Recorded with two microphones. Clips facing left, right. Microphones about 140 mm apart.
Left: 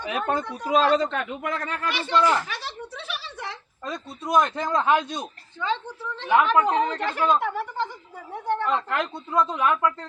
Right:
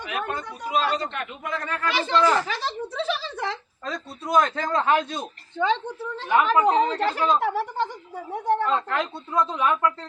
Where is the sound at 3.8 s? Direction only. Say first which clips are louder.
Left 2 dB; centre (ahead or behind).